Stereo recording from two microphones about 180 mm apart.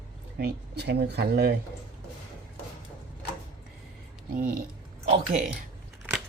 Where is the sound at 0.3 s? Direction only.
65° right (ahead or behind).